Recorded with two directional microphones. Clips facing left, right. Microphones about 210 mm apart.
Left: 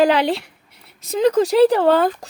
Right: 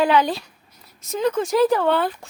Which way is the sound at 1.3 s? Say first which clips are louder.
Left 4 dB; 35° left (ahead or behind).